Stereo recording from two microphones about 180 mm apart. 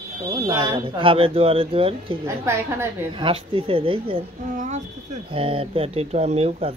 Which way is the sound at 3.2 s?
30° right (ahead or behind).